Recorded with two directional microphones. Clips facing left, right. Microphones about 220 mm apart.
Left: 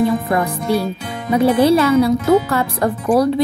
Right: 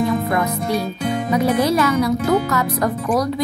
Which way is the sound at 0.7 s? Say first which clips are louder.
Left 2 dB; 30° left (ahead or behind).